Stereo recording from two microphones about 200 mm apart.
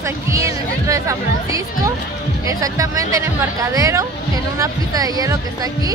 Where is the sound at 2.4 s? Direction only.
15° right (ahead or behind).